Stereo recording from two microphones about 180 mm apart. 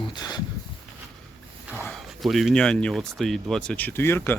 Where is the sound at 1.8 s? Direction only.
Centre (ahead or behind).